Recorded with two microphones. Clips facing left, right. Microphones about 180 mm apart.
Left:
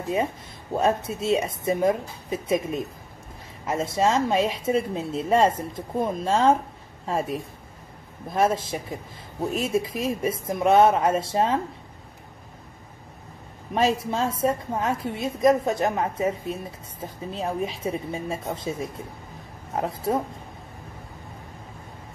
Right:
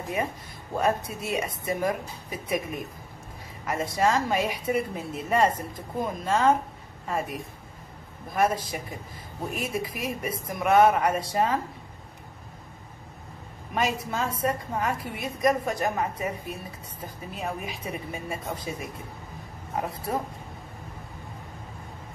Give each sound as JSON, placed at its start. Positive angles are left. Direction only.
{"t": 0.7, "sound": "a woman's voice", "side_deg": 25}
{"t": 8.3, "sound": "a woman's voice", "side_deg": 25}
{"t": 13.7, "sound": "a woman's voice", "side_deg": 30}